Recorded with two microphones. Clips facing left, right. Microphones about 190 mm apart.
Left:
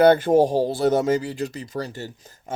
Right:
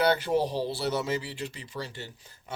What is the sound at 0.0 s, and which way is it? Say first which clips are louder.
Speech: left 10 dB; 50° left (ahead or behind).